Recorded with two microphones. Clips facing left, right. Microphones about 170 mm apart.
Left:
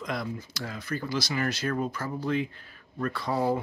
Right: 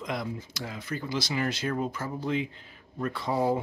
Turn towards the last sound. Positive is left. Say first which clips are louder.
# even
turn(degrees=-20)  # may be behind; listen again after turning